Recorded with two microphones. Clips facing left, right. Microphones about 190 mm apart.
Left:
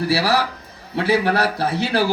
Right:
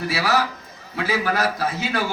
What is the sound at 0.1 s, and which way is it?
A man's voice, 30° left (ahead or behind).